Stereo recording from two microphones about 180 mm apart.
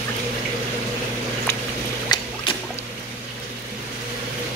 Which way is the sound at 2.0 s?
25° left (ahead or behind).